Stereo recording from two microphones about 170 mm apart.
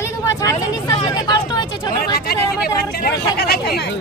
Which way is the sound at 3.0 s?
65° left (ahead or behind).